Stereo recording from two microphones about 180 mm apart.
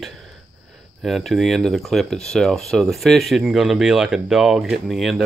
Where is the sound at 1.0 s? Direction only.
Centre (ahead or behind).